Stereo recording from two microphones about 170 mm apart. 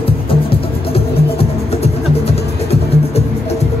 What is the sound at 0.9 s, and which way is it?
Music, 35° left (ahead or behind).